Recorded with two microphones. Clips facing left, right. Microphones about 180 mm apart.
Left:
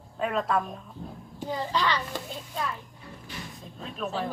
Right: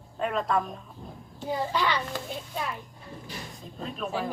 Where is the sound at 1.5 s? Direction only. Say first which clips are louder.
Right 1 dB; 10° right (ahead or behind).